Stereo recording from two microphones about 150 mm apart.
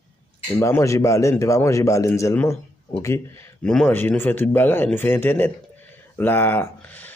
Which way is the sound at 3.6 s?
5° left (ahead or behind).